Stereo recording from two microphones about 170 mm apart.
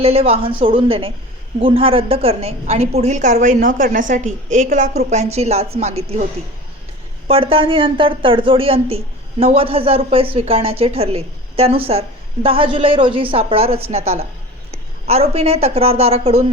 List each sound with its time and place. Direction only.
0.0 s a woman's voice: 35° right (ahead or behind)
7.3 s a woman's voice: 35° right (ahead or behind)